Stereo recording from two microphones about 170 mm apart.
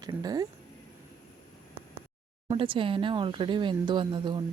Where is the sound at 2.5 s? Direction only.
30° right (ahead or behind).